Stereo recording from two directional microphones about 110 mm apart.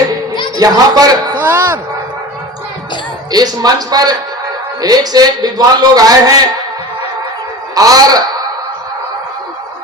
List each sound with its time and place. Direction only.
0.6 s a man's voice: 35° right (ahead or behind)
1.4 s speech: 20° right (ahead or behind)
3.3 s a man's voice: 35° right (ahead or behind)
7.8 s a man's voice: 35° right (ahead or behind)